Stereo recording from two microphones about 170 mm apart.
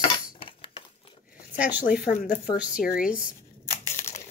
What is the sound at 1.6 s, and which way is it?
Speech, 5° right (ahead or behind).